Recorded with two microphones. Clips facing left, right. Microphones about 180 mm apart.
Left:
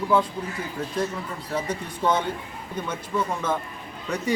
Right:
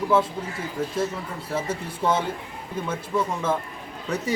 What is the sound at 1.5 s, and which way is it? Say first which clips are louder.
Speech: even; 5° right (ahead or behind).